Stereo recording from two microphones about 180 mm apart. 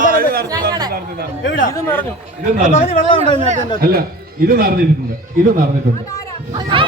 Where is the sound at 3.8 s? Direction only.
60° right (ahead or behind).